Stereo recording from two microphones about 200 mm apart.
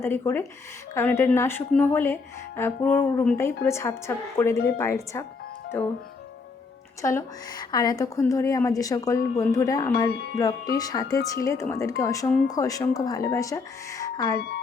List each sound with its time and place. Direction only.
0.0 s a woman's voice: 10° left (ahead or behind)
7.0 s a woman's voice: 15° left (ahead or behind)
14.3 s speech: 55° left (ahead or behind)